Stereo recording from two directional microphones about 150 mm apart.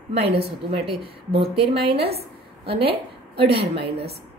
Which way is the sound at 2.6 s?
40° right (ahead or behind).